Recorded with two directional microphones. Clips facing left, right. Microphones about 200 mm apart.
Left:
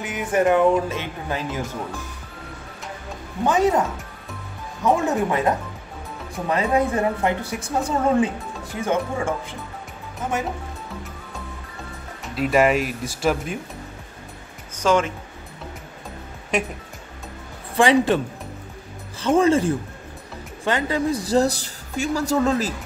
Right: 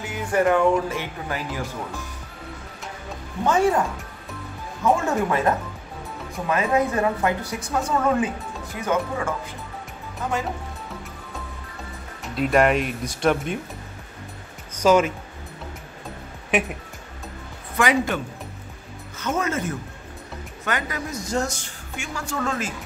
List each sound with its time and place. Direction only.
0.0 s a woman's voice: 20° left (ahead or behind)
3.4 s a woman's voice: 20° left (ahead or behind)
4.8 s a woman's voice: 20° left (ahead or behind)
6.5 s a woman's voice: 30° left (ahead or behind)
12.4 s speech: centre (ahead or behind)
14.8 s speech: 10° right (ahead or behind)
16.5 s speech: 5° right (ahead or behind)
17.7 s speech: 30° left (ahead or behind)